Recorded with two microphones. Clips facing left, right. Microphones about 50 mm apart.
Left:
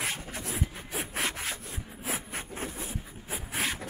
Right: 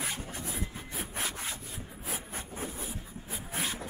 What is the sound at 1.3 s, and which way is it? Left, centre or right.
Rub, left.